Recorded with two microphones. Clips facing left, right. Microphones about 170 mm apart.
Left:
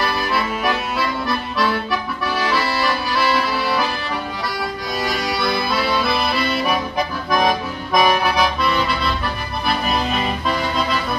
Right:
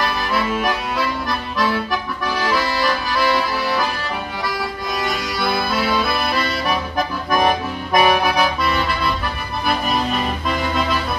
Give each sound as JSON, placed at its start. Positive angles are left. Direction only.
{"t": 8.0, "sound": "accordion", "side_deg": -10}